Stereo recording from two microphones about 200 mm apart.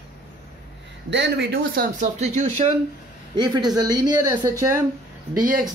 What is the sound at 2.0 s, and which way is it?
Speech, 30° right (ahead or behind).